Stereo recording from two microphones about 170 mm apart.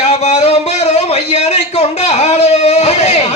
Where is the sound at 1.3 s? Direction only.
40° left (ahead or behind).